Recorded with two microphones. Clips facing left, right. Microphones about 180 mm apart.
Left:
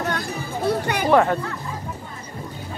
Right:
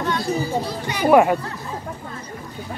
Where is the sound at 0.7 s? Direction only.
60° left (ahead or behind).